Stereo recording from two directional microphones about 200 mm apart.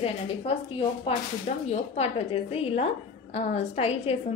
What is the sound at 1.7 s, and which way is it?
A woman's voice, 30° left (ahead or behind).